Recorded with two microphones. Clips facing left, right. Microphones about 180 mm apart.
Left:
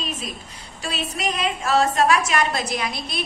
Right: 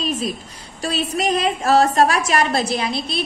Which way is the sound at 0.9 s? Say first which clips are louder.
Right 6 dB; 35° right (ahead or behind).